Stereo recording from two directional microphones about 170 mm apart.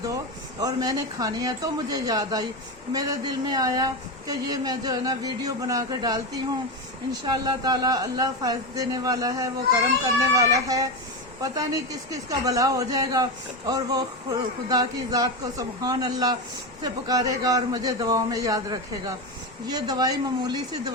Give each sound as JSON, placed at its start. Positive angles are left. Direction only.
{"t": 0.6, "sound": "speech", "side_deg": -20}